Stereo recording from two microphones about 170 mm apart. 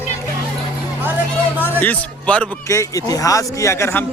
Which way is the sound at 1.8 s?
10° left (ahead or behind).